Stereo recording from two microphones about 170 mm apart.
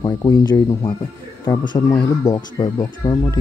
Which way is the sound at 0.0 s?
25° left (ahead or behind).